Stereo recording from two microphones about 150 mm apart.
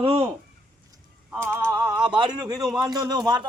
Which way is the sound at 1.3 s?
15° right (ahead or behind).